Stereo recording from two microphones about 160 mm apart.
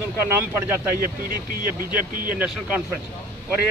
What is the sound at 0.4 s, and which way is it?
Speech, 15° right (ahead or behind).